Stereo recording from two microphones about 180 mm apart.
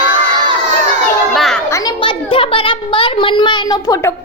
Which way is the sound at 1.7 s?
15° left (ahead or behind).